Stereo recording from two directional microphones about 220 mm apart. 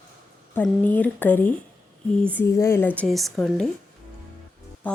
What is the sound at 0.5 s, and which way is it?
Speech, 5° left (ahead or behind).